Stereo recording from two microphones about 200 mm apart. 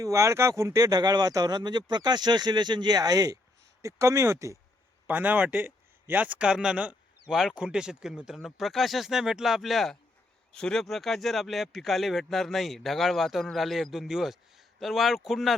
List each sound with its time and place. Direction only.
0.0 s speech: 15° right (ahead or behind)